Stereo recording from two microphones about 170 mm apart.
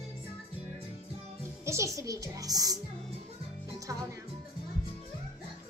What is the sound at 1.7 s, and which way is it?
A child's voice, 20° right (ahead or behind).